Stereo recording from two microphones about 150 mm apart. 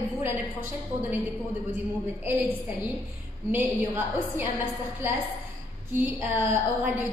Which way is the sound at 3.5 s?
15° right (ahead or behind).